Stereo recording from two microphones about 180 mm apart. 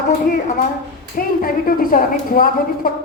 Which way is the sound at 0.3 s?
50° left (ahead or behind).